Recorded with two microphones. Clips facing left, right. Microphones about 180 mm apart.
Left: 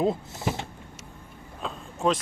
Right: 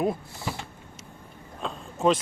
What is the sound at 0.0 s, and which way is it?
Speech, 20° left (ahead or behind).